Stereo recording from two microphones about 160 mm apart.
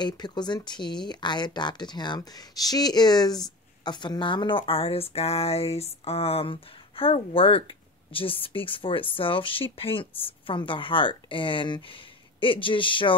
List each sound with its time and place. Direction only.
0.0 s speech: 25° left (ahead or behind)